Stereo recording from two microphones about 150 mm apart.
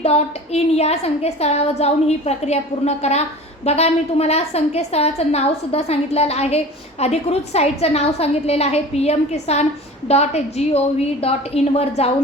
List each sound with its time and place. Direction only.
0.0 s a woman's voice: 45° left (ahead or behind)